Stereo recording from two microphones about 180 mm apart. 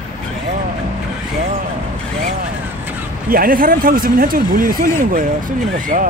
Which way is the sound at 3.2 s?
50° right (ahead or behind).